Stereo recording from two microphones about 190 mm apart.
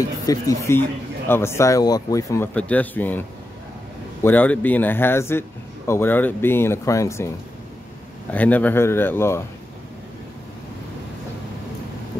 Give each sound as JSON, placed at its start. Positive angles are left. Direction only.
{"t": 0.3, "sound": "speech", "side_deg": 15}